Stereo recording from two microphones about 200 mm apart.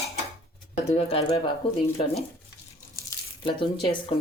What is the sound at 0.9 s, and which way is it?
Speech, 30° left (ahead or behind).